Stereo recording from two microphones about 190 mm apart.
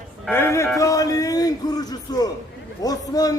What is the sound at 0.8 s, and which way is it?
A man's voice, 15° left (ahead or behind).